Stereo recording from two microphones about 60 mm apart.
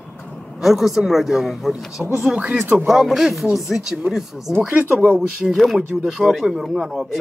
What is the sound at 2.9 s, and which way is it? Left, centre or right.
Speech, centre.